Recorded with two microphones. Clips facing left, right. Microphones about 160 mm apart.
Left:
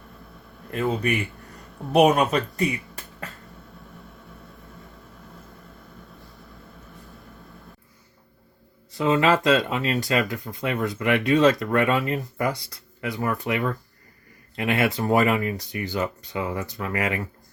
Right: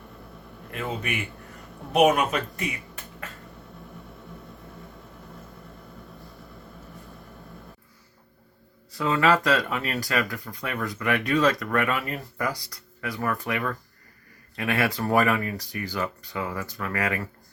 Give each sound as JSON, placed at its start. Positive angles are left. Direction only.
{"t": 1.0, "sound": "a man's voice", "side_deg": 35}
{"t": 8.9, "sound": "speech", "side_deg": 20}